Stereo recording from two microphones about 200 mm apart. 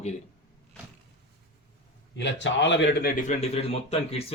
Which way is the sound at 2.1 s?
65° left (ahead or behind).